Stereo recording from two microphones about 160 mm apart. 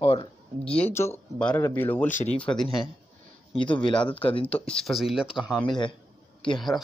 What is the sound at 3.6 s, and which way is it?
Speech, 30° left (ahead or behind).